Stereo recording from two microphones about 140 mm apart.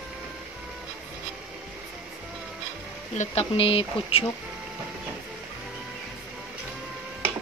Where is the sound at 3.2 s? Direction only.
45° left (ahead or behind).